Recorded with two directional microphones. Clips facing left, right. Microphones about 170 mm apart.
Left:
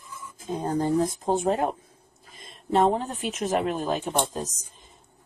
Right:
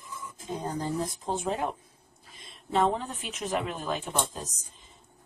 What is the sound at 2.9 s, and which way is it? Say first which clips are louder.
Speech: left 5 dB; 40° left (ahead or behind).